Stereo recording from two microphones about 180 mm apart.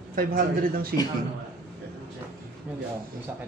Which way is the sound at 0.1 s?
55° right (ahead or behind).